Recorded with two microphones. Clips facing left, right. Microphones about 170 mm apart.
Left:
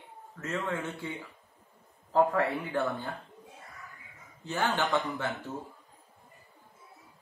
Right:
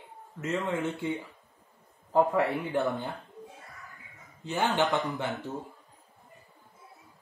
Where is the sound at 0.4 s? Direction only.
15° right (ahead or behind).